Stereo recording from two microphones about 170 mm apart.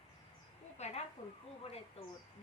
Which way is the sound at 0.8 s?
40° left (ahead or behind).